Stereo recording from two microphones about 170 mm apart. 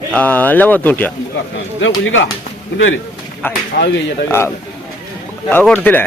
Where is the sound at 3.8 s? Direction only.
70° left (ahead or behind).